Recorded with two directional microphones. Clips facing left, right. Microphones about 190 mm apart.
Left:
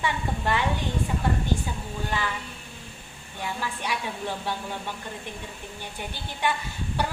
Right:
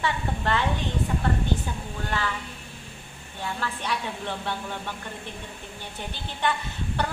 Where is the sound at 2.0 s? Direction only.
15° left (ahead or behind).